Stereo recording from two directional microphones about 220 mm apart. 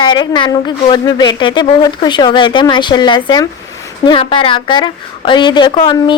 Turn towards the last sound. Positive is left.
turn(degrees=20)  # may be behind; listen again after turning